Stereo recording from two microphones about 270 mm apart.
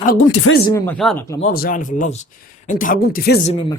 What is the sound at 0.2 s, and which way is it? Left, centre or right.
Speech, left.